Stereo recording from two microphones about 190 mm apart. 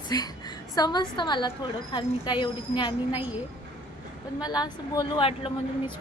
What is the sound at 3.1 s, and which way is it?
Speech, 10° right (ahead or behind).